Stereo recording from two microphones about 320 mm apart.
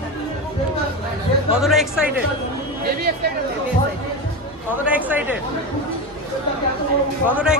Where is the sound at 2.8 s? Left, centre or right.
Right.